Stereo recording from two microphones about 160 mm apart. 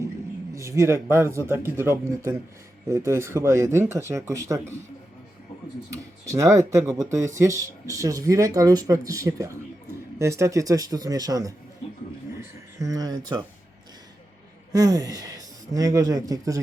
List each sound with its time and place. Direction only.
0.5 s speech: 20° right (ahead or behind)
5.9 s speech: 20° right (ahead or behind)
12.8 s speech: 25° right (ahead or behind)
14.7 s speech: 20° right (ahead or behind)